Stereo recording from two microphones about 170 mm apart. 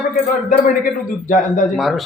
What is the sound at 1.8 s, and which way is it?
Speech, centre (ahead or behind).